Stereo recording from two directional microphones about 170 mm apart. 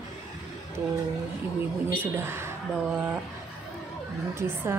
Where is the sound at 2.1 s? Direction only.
15° right (ahead or behind).